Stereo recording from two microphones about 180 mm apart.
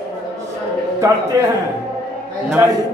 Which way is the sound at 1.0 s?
20° right (ahead or behind).